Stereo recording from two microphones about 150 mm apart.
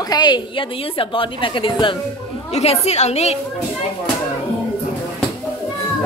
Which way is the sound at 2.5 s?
45° left (ahead or behind).